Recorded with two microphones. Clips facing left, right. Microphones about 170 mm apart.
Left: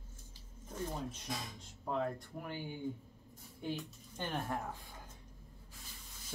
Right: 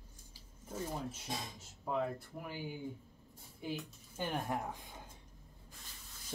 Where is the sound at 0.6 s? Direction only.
10° right (ahead or behind).